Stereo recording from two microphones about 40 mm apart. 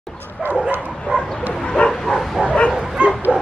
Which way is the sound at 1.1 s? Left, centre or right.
Right.